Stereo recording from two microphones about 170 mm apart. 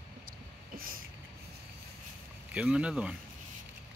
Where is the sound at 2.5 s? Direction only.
5° right (ahead or behind).